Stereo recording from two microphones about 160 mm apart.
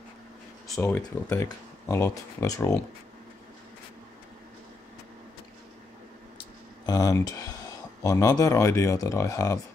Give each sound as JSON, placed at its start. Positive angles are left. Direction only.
{"t": 0.9, "sound": "speech", "side_deg": 15}
{"t": 6.9, "sound": "speech", "side_deg": 25}